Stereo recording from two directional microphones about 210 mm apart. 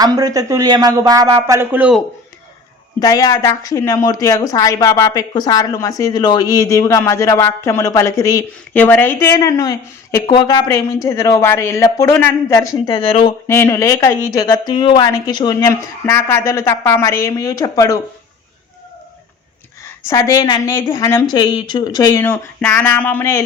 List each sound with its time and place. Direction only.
0.0 s speech: 15° right (ahead or behind)
3.0 s a woman's voice: 20° left (ahead or behind)
13.5 s a woman's voice: 10° left (ahead or behind)
20.1 s a woman's voice: 15° left (ahead or behind)